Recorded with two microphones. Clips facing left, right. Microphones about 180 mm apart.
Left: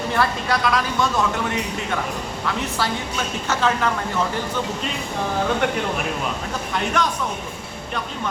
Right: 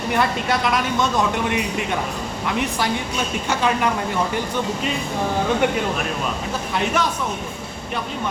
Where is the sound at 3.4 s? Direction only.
15° right (ahead or behind).